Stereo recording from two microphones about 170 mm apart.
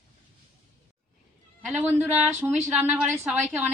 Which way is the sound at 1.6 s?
Centre (ahead or behind).